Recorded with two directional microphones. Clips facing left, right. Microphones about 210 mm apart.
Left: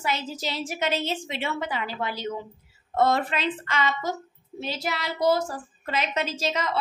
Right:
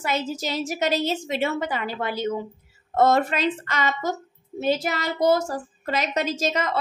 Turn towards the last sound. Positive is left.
turn(degrees=-50)  # may be behind; listen again after turning